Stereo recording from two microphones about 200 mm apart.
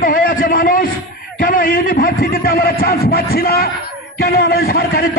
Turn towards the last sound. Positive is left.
turn(degrees=45)  # may be behind; listen again after turning